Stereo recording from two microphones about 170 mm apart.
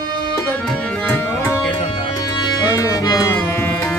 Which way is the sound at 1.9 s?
25° left (ahead or behind).